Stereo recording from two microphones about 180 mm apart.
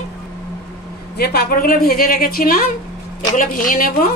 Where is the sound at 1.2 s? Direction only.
55° left (ahead or behind).